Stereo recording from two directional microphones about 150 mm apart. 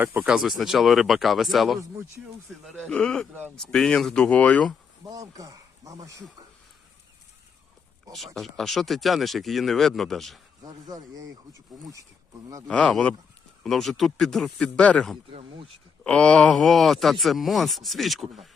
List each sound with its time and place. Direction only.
0.0 s speech: 10° right (ahead or behind)
2.9 s speech: 5° left (ahead or behind)
5.0 s speech: 25° right (ahead or behind)
8.1 s speech: centre (ahead or behind)
10.8 s speech: 25° right (ahead or behind)
12.6 s speech: 5° left (ahead or behind)
15.3 s speech: 40° right (ahead or behind)
16.0 s speech: 5° left (ahead or behind)